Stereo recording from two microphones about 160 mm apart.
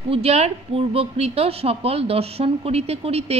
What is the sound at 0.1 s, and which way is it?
Speech, 40° right (ahead or behind).